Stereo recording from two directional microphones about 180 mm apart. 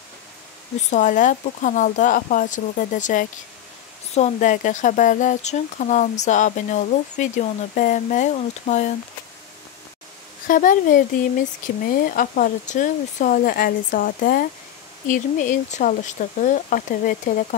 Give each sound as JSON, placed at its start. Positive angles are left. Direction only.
{"t": 0.8, "sound": "speech", "side_deg": 45}
{"t": 10.4, "sound": "speech", "side_deg": 50}